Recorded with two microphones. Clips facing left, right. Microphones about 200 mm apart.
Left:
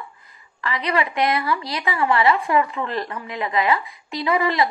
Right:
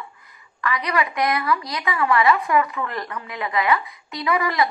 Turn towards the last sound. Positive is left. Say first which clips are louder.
# left 1 dB
turn(degrees=25)  # may be behind; listen again after turning